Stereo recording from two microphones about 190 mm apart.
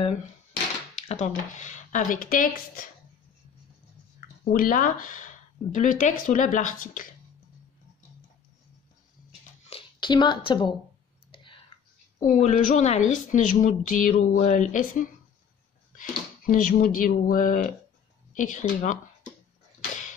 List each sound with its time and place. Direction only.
1.0 s speech: 40° left (ahead or behind)
4.5 s speech: 50° left (ahead or behind)
9.7 s speech: 25° left (ahead or behind)
11.3 s whispering: 25° left (ahead or behind)
12.3 s speech: 40° left (ahead or behind)